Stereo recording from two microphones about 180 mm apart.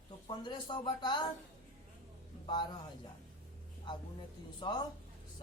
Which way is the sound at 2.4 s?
25° left (ahead or behind).